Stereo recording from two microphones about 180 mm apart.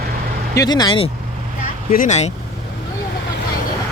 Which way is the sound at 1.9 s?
45° left (ahead or behind).